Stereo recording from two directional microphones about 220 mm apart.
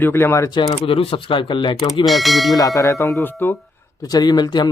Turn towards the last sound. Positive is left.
turn(degrees=20)  # may be behind; listen again after turning